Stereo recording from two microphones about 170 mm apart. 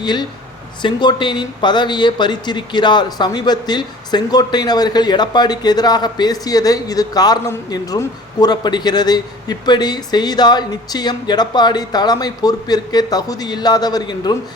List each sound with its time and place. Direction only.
0.0 s speech: 25° left (ahead or behind)